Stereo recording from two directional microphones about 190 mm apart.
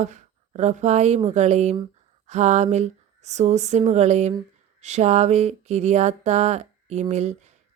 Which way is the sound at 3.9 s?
35° right (ahead or behind).